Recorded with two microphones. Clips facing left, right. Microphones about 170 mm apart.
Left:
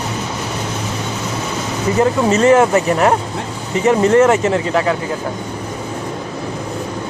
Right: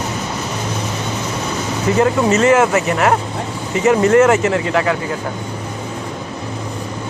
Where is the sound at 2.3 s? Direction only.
35° left (ahead or behind).